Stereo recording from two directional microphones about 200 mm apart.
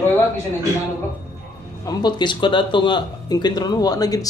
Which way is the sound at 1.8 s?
20° left (ahead or behind).